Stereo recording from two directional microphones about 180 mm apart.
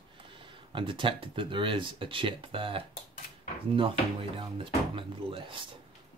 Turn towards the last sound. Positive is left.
turn(degrees=-30)  # may be behind; listen again after turning